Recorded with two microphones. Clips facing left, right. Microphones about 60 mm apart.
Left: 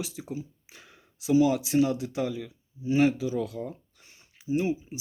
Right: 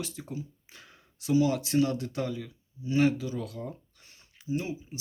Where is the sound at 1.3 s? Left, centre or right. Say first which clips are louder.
Left 3 dB; left.